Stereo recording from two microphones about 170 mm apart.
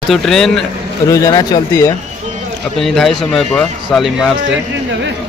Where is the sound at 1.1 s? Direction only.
20° left (ahead or behind).